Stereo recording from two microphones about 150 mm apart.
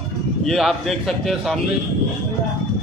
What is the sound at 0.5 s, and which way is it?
Speech, centre (ahead or behind).